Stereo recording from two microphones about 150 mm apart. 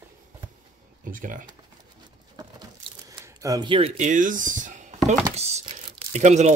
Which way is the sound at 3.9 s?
55° right (ahead or behind).